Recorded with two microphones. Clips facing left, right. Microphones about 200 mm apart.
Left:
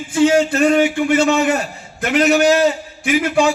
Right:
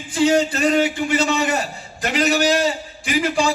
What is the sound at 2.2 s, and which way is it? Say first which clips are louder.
Speech: left 5 dB; 60° left (ahead or behind).